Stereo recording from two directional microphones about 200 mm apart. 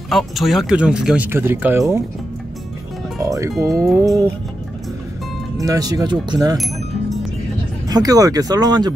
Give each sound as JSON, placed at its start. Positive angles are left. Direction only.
{"t": 0.1, "sound": "speech", "side_deg": 0}
{"t": 3.2, "sound": "speech", "side_deg": -15}
{"t": 5.6, "sound": "speech", "side_deg": -20}
{"t": 7.9, "sound": "speech", "side_deg": -20}